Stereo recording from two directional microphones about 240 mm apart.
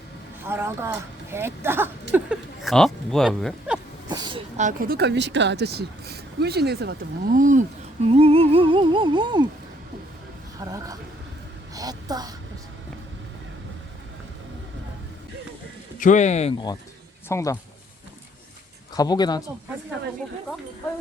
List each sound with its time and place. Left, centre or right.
0.4 s speech: centre
4.1 s a woman's voice: centre
4.9 s speech: right
8.0 s humming: right
10.6 s speech: centre
11.7 s a sound: centre
16.0 s speech: left
17.2 s speech: centre
18.9 s speech: centre